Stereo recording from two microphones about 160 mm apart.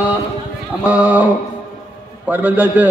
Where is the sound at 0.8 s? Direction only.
10° right (ahead or behind).